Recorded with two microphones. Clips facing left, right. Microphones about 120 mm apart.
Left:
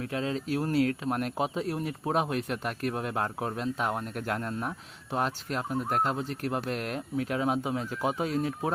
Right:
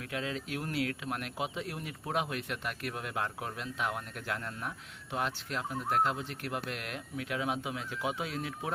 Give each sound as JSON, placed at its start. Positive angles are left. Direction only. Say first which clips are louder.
{"t": 0.0, "sound": "speech", "louder": "left 6 dB", "side_deg": 35}